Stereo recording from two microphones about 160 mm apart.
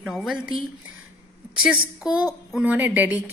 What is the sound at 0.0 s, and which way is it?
Speech, centre (ahead or behind).